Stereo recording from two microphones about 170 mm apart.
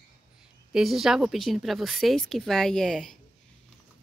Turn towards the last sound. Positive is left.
turn(degrees=0)  # may be behind; listen again after turning